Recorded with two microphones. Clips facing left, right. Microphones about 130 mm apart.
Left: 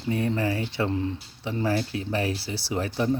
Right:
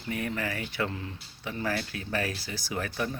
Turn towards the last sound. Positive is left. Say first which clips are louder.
# left 6 dB
turn(degrees=25)  # may be behind; listen again after turning